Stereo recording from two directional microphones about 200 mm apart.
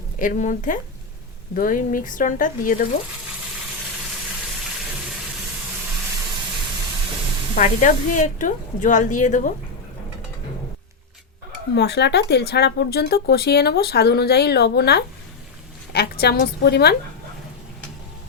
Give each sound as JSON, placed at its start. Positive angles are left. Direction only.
{"t": 0.2, "sound": "speech", "side_deg": 40}
{"t": 7.5, "sound": "speech", "side_deg": 40}
{"t": 11.7, "sound": "speech", "side_deg": 55}